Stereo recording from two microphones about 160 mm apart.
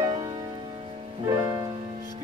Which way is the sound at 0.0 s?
25° right (ahead or behind).